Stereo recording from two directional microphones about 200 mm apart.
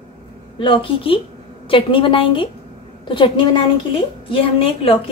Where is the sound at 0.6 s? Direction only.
25° left (ahead or behind).